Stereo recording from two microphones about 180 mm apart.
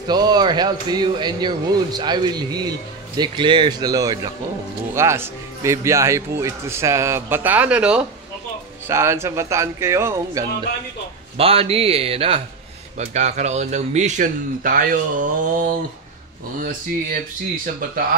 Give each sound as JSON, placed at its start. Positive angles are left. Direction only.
{"t": 0.0, "sound": "speech", "side_deg": -20}
{"t": 11.3, "sound": "speech", "side_deg": -35}